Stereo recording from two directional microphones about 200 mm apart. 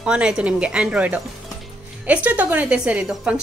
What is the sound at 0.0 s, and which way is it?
A woman's voice, 5° right (ahead or behind).